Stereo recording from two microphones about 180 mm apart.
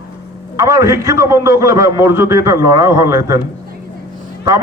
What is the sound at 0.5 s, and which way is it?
A man's voice, 15° right (ahead or behind).